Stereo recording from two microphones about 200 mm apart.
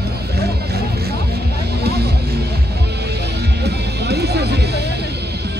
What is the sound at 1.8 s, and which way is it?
Music, 55° right (ahead or behind).